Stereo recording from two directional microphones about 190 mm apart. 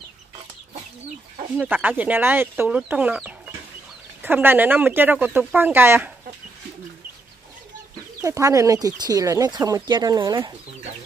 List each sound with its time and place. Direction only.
1.6 s speech: 10° right (ahead or behind)
4.2 s speech: 10° right (ahead or behind)
8.2 s speech: 15° right (ahead or behind)